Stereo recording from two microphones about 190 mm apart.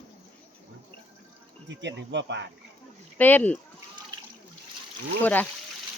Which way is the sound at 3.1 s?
10° left (ahead or behind).